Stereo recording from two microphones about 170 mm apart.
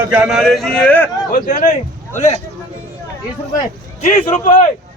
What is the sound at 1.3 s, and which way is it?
A man's voice, 50° left (ahead or behind).